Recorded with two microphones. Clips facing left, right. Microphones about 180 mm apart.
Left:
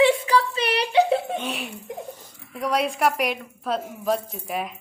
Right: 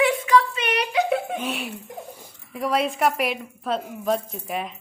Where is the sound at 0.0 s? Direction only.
30° left (ahead or behind).